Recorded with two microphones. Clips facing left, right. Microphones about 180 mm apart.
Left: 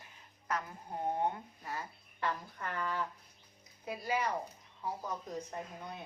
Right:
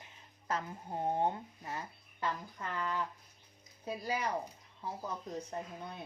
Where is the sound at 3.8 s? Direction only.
35° right (ahead or behind).